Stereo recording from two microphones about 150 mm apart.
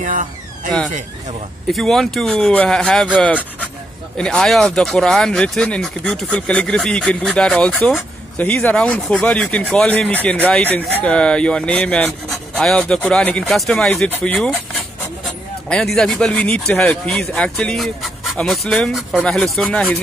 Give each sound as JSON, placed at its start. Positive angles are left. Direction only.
{"t": 0.0, "sound": "vehicle", "side_deg": -60}
{"t": 1.7, "sound": "speech", "side_deg": 0}